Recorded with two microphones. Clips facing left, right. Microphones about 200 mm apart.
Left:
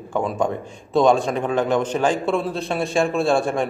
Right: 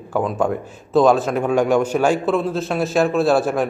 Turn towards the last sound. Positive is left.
turn(degrees=-5)  # may be behind; listen again after turning